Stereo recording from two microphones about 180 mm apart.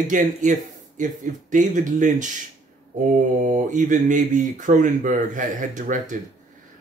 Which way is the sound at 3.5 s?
45° right (ahead or behind).